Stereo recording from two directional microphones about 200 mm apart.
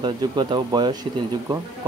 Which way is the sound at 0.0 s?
25° right (ahead or behind).